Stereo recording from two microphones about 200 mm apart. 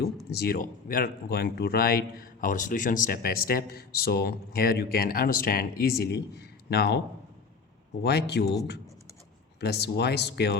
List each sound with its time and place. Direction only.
0.3 s speech: 50° left (ahead or behind)
8.0 s speech: 55° left (ahead or behind)
9.6 s speech: 55° left (ahead or behind)